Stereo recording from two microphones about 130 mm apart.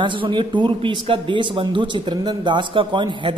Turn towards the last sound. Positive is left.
turn(degrees=-40)  # may be behind; listen again after turning